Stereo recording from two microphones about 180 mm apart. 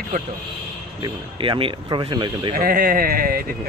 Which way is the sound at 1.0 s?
30° right (ahead or behind).